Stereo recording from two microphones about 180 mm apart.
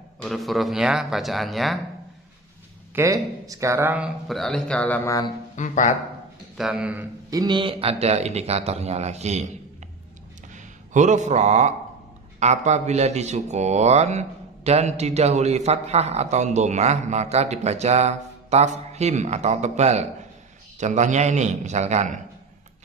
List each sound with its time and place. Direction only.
0.2 s speech: centre (ahead or behind)
2.9 s speech: 15° right (ahead or behind); by 5.3 s 15° left (ahead or behind)
5.6 s speech: 45° left (ahead or behind)
6.5 s speech: centre (ahead or behind)
7.2 s speech: 20° right (ahead or behind); by 9.5 s 40° right (ahead or behind)
10.5 s speech: 45° right (ahead or behind)